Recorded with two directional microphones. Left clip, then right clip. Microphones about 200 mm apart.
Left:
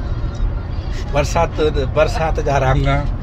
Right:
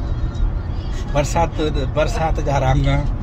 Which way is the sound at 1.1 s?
25° left (ahead or behind).